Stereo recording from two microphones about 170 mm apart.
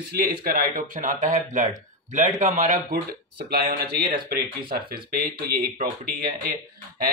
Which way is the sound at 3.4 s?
65° right (ahead or behind).